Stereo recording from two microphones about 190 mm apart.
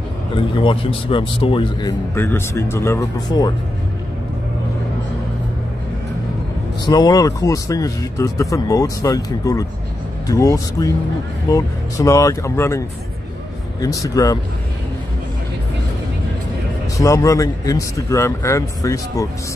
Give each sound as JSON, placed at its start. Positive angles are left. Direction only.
{"t": 0.6, "sound": "speech", "side_deg": 25}
{"t": 6.9, "sound": "speech", "side_deg": 20}
{"t": 16.9, "sound": "speech", "side_deg": 15}